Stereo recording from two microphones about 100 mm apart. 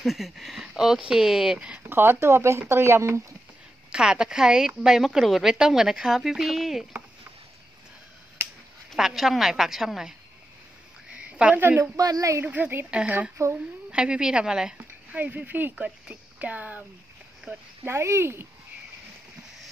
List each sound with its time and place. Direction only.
0.0 s a woman's voice: centre (ahead or behind)
1.9 s speech: 20° right (ahead or behind)
3.9 s a woman's voice: 10° right (ahead or behind)
8.9 s a woman's voice: 5° right (ahead or behind)
11.1 s a sound: 10° right (ahead or behind)
12.0 s speech: 35° right (ahead or behind)
12.4 s speech: 15° right (ahead or behind)
14.8 s speech: 15° right (ahead or behind)